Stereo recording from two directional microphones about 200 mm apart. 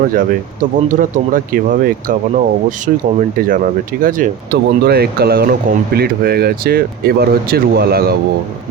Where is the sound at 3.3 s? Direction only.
45° right (ahead or behind).